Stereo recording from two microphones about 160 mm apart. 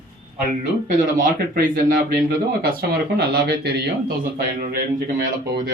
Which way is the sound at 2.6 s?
80° right.